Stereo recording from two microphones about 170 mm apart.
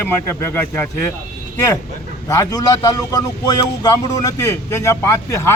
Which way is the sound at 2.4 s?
20° left (ahead or behind).